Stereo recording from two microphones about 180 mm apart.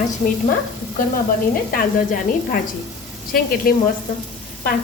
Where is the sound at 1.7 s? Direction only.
55° left (ahead or behind).